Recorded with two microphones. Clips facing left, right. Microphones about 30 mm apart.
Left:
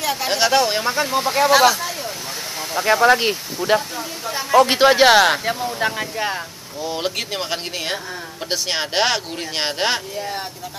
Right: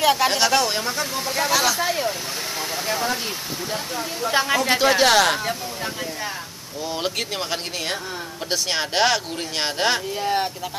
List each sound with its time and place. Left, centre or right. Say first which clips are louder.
0.0 s speech: right 5 dB; centre
0.3 s speech: left 3 dB; centre
1.8 s speech: right 4 dB; centre
2.8 s speech: left 11 dB; left
3.1 s speech: left 10 dB; left
4.3 s speech: right 2 dB; right
4.7 s speech: left 2 dB; centre
5.8 s speech: left 6 dB; left
6.8 s speech: left 2 dB; centre
10.1 s speech: right 4 dB; right